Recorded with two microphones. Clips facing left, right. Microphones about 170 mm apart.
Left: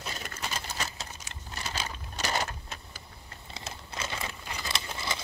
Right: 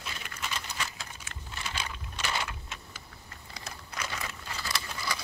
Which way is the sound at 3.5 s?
25° left (ahead or behind).